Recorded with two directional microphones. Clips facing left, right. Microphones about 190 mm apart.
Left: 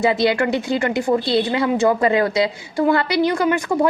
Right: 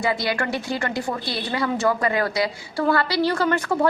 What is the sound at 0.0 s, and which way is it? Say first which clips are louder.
A woman's voice: left 7 dB; 20° left (ahead or behind).